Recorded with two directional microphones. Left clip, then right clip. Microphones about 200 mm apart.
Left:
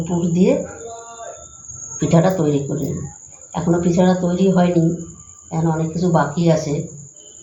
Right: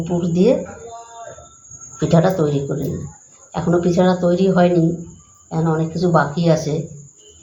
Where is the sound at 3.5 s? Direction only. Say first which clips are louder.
Right 1 dB; 40° right (ahead or behind).